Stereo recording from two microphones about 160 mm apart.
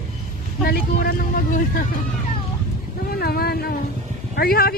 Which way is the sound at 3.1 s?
75° left (ahead or behind).